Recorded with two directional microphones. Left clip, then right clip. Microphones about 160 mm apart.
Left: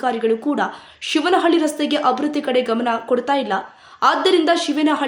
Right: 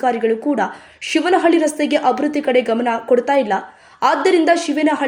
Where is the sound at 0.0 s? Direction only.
10° right (ahead or behind).